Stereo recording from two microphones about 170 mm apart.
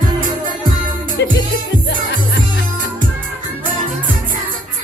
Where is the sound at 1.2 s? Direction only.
90° left.